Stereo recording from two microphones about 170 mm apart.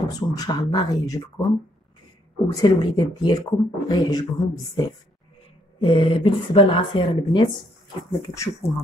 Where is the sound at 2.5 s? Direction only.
25° left (ahead or behind).